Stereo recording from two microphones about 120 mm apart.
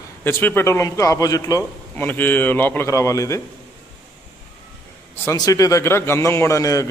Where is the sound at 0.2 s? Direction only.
20° left (ahead or behind).